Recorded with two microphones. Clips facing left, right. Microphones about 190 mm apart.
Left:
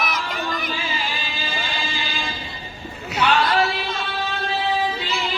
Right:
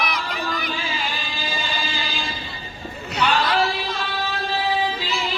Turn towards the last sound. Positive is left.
turn(degrees=0)  # may be behind; listen again after turning